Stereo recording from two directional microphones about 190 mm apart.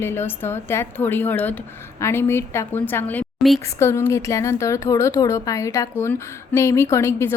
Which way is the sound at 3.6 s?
15° left (ahead or behind).